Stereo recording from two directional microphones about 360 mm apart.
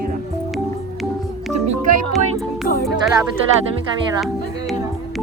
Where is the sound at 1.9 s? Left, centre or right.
Right.